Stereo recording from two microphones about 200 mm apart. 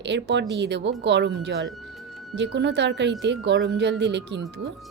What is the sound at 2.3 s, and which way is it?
Speech, 60° right (ahead or behind).